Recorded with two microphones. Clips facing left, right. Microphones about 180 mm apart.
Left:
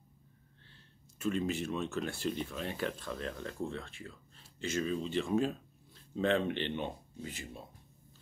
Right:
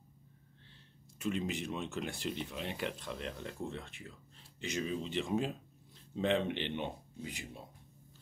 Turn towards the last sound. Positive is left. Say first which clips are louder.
# left 1 dB
turn(degrees=-15)  # may be behind; listen again after turning